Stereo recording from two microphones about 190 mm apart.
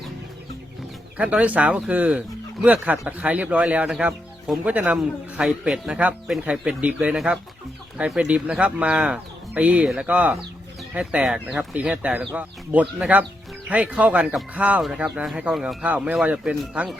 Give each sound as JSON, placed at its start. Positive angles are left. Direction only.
{"t": 1.1, "sound": "speech", "side_deg": -5}